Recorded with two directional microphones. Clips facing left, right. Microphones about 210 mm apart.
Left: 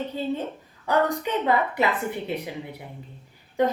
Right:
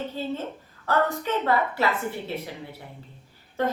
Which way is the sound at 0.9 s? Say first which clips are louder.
Left 1 dB; 15° left (ahead or behind).